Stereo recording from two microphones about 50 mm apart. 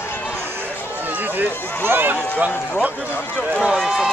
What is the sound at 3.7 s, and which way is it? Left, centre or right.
Speech, centre.